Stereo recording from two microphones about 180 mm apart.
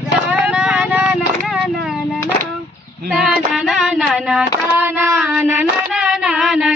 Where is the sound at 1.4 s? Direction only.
Centre (ahead or behind).